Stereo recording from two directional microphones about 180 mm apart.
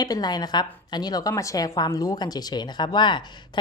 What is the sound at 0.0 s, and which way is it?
A woman's voice, 20° left (ahead or behind).